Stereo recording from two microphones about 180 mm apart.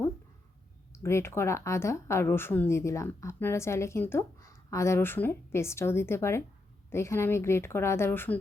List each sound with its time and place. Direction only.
0.9 s a woman's voice: 15° left (ahead or behind)